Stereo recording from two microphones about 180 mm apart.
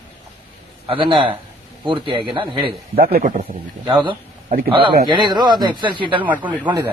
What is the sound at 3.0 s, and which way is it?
Speech, 55° right (ahead or behind).